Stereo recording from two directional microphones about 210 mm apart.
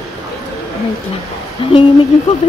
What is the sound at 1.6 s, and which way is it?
Speech, 25° left (ahead or behind).